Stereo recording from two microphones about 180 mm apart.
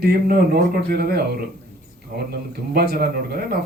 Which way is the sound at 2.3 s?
65° right (ahead or behind).